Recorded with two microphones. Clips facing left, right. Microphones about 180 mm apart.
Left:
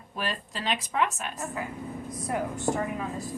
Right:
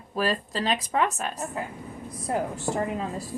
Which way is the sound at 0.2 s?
35° right (ahead or behind).